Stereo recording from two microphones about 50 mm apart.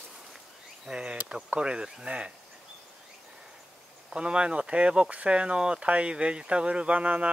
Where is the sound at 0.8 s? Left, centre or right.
Centre.